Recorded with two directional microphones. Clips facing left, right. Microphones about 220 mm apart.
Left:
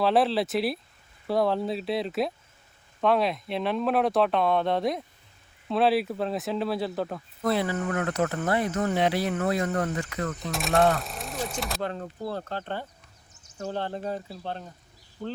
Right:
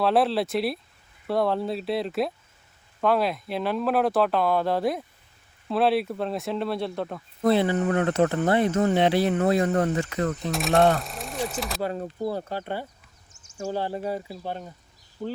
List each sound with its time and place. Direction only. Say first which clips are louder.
0.0 s speech: right 1 dB; centre (ahead or behind)
7.4 s speech: right 5 dB; 25° right (ahead or behind)
10.5 s speech: right 2 dB; centre (ahead or behind)